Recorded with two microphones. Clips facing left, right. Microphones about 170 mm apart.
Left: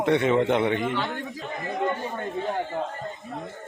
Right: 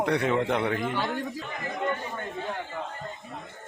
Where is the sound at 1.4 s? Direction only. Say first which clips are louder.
Left 7 dB; 30° left (ahead or behind).